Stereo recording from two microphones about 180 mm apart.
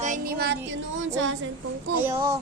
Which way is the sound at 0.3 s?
65° right (ahead or behind).